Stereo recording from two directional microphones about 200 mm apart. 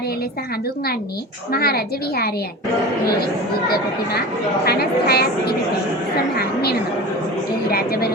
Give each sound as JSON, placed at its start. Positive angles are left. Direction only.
{"t": 1.5, "sound": "a woman's voice", "side_deg": 50}
{"t": 4.6, "sound": "a woman's voice", "side_deg": 50}
{"t": 6.3, "sound": "a woman's voice", "side_deg": 50}